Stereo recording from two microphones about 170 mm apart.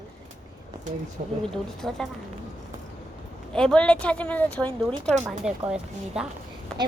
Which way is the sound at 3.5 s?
5° left (ahead or behind).